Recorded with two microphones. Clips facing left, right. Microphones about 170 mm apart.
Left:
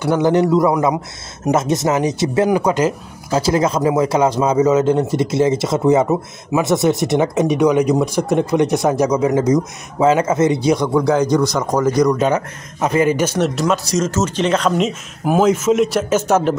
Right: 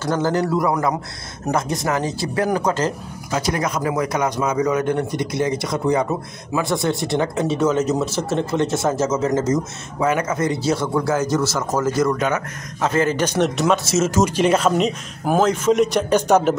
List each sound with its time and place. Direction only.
0.0 s speech: 15° left (ahead or behind)
2.5 s a man's voice: 10° left (ahead or behind)
3.3 s speech: 30° left (ahead or behind); by 10.0 s 10° left (ahead or behind)
10.0 s a man's voice: 25° left (ahead or behind)
12.2 s speech: 30° left (ahead or behind)
12.8 s a man's voice: 15° left (ahead or behind)